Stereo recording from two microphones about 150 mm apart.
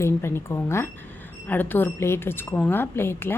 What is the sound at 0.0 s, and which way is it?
A woman's voice, 15° left (ahead or behind).